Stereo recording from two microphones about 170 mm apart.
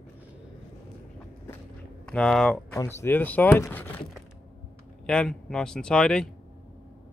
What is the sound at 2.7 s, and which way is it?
Speech, 15° left (ahead or behind).